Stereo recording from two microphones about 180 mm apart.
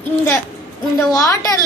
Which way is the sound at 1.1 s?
20° left (ahead or behind).